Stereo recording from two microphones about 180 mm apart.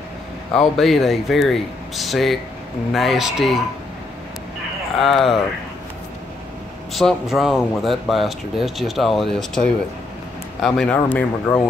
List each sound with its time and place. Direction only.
0.6 s speech: centre (ahead or behind)
5.0 s speech: centre (ahead or behind)
6.9 s speech: centre (ahead or behind)